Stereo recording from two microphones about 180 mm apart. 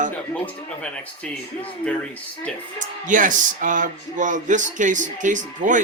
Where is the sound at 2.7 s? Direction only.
45° right (ahead or behind).